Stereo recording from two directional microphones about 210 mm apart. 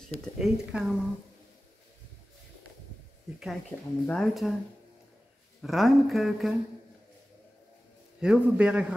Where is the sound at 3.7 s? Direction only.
10° left (ahead or behind).